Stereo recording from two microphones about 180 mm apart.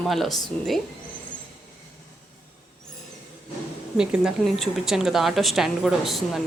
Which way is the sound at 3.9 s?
5° right (ahead or behind).